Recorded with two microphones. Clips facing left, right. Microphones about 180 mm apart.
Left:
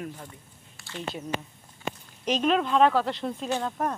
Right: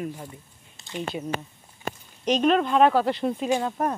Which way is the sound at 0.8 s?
15° right (ahead or behind).